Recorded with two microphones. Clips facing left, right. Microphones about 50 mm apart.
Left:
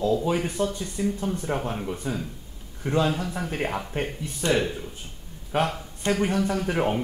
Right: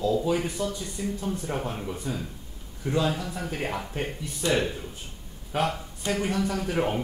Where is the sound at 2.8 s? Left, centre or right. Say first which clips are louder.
Left 2 dB; left.